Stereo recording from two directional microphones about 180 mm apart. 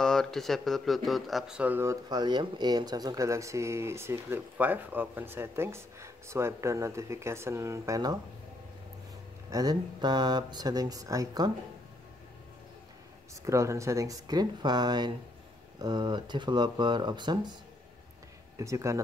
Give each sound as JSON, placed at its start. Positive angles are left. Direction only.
{"t": 0.0, "sound": "speech", "side_deg": 5}
{"t": 9.5, "sound": "speech", "side_deg": -20}
{"t": 13.3, "sound": "speech", "side_deg": -15}
{"t": 18.6, "sound": "speech", "side_deg": -15}